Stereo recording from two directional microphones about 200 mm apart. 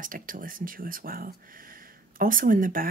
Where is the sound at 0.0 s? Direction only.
45° right (ahead or behind).